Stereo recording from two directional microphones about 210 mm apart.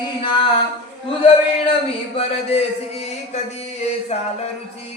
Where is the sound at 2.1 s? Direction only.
30° left (ahead or behind).